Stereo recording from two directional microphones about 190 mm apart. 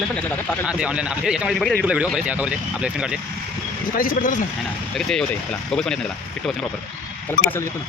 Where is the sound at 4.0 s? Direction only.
45° left (ahead or behind).